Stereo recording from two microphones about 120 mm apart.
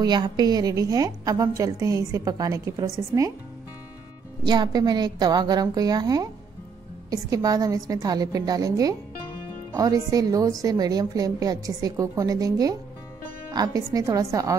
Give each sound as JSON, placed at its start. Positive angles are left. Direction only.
{"t": 0.0, "sound": "a woman's voice", "side_deg": -35}
{"t": 4.5, "sound": "a woman's voice", "side_deg": -35}